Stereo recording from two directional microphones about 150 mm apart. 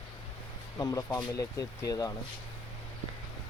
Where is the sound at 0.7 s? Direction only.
25° left (ahead or behind).